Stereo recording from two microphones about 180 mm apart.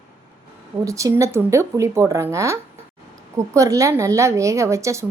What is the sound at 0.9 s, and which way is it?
A woman's voice, 15° right (ahead or behind).